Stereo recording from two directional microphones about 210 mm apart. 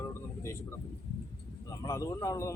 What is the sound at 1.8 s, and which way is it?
Speech, 15° left (ahead or behind).